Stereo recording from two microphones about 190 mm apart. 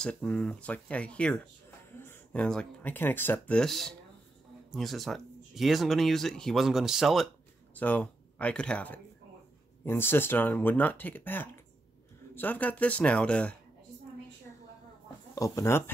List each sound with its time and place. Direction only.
0.0 s speech: 5° left (ahead or behind)
15.3 s speech: 15° left (ahead or behind)